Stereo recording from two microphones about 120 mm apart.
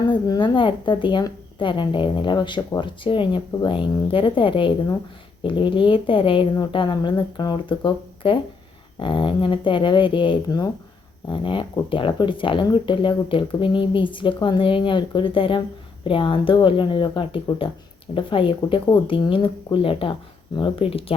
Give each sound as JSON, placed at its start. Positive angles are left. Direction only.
{"t": 0.1, "sound": "a woman's voice", "side_deg": 40}